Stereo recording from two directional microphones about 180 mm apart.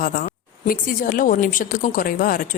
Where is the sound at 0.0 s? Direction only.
50° left (ahead or behind).